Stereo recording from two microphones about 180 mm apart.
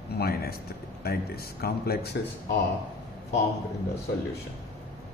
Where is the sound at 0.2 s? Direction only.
60° left (ahead or behind).